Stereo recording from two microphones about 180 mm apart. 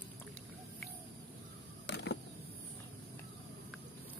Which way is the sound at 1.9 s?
75° left (ahead or behind).